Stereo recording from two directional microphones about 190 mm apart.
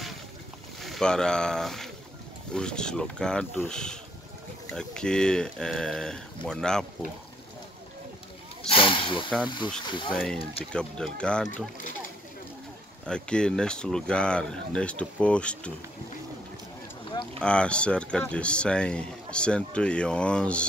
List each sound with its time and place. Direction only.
0.7 s speech: centre (ahead or behind)
8.6 s speech: 25° left (ahead or behind)
10.1 s speech: 5° left (ahead or behind)
13.0 s speech: 5° left (ahead or behind)
17.4 s speech: 5° left (ahead or behind)